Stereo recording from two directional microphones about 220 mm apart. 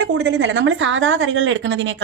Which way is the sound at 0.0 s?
55° right (ahead or behind).